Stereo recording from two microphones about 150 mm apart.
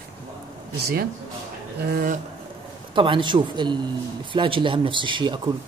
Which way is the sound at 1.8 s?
90° right.